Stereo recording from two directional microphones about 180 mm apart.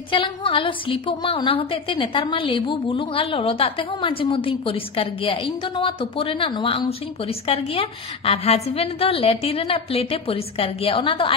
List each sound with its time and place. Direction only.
0.1 s a woman's voice: 30° left (ahead or behind)